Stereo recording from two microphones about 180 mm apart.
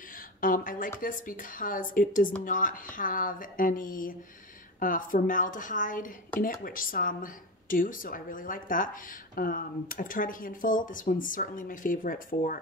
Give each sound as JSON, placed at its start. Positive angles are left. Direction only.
{"t": 0.4, "sound": "speech", "side_deg": 50}